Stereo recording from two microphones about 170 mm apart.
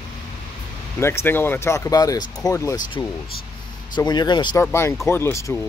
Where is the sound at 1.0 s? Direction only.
15° left (ahead or behind).